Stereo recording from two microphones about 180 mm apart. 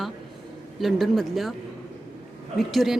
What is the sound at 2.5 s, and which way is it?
Speech, centre (ahead or behind).